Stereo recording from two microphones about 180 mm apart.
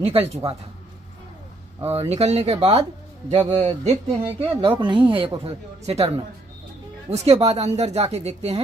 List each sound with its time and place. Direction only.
0.0 s speech: 35° right (ahead or behind)
1.9 s speech: 35° right (ahead or behind)